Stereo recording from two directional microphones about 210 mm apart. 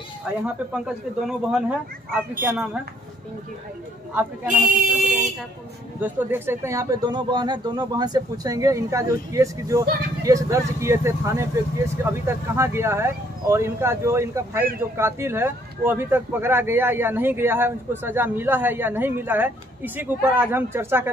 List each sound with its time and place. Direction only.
0.2 s speech: 5° right (ahead or behind)
4.1 s speech: 5° right (ahead or behind)
5.9 s speech: 10° right (ahead or behind)